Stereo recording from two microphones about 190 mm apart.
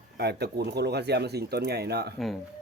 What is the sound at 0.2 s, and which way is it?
Speech, 60° right (ahead or behind).